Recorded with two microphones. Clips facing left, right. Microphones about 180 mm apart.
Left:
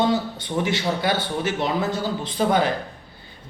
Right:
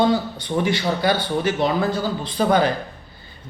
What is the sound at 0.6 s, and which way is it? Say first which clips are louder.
Speech: right 3 dB; 20° left (ahead or behind).